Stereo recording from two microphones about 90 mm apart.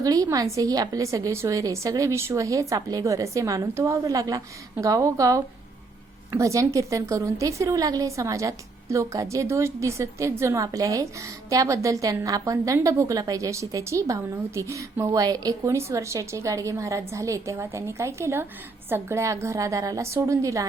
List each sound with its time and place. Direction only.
0.0 s a woman's voice: 40° right (ahead or behind)